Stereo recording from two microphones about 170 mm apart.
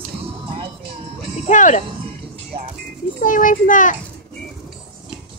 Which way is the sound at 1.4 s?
45° left (ahead or behind).